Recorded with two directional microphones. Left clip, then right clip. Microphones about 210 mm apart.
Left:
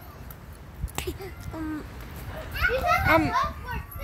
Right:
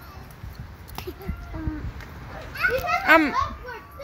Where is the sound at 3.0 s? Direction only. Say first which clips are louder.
Right 8 dB; 30° right (ahead or behind).